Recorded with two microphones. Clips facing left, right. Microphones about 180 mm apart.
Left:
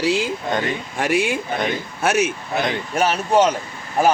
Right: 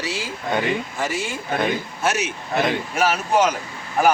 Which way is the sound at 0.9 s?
65° left (ahead or behind).